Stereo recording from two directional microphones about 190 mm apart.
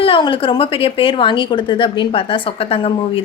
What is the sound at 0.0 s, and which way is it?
A woman's voice, 25° left (ahead or behind).